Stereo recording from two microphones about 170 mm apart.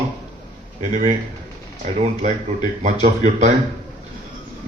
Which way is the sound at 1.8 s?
45° right (ahead or behind).